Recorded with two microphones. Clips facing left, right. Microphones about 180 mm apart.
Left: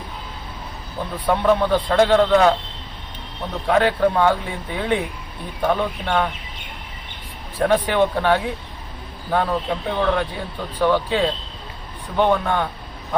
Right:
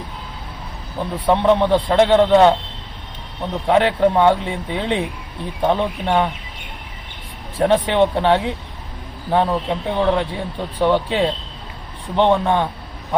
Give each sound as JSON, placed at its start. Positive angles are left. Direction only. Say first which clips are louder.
{"t": 1.1, "sound": "speech", "louder": "right 3 dB", "side_deg": -25}
{"t": 3.7, "sound": "speech", "louder": "right 2 dB", "side_deg": -25}
{"t": 7.6, "sound": "speech", "louder": "right 2 dB", "side_deg": -25}